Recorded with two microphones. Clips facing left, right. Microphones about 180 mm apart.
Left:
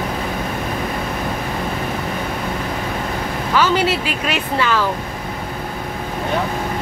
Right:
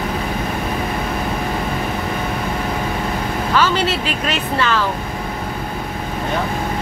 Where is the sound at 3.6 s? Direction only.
10° left (ahead or behind).